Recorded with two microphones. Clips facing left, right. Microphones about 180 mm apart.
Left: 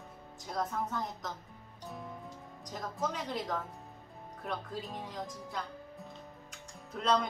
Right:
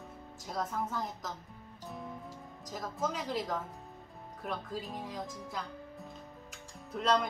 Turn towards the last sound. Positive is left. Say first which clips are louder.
# right 1 dB
turn(degrees=-5)  # may be behind; listen again after turning